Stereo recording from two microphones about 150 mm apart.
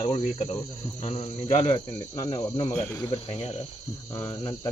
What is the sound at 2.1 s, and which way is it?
Cricket, 35° left (ahead or behind).